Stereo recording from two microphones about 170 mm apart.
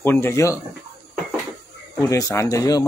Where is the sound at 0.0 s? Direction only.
15° left (ahead or behind).